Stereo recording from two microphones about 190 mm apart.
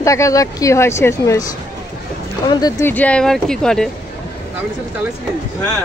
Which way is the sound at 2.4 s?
20° left (ahead or behind).